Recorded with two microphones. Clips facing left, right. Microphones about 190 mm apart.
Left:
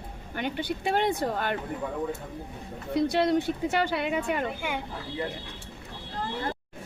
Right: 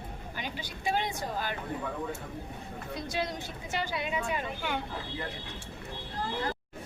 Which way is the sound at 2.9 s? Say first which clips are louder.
Left 12 dB; 65° left (ahead or behind).